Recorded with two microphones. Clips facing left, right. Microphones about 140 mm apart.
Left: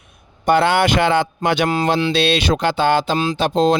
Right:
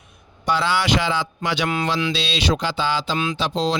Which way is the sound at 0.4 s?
55° left (ahead or behind).